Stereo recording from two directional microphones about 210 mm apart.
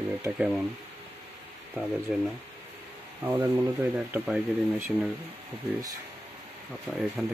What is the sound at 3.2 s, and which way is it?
Speech, 10° right (ahead or behind).